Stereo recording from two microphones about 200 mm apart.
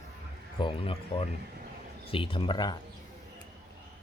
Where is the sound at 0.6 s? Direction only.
25° left (ahead or behind).